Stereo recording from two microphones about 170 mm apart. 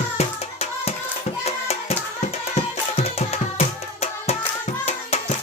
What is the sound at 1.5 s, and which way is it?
Music, 35° left (ahead or behind).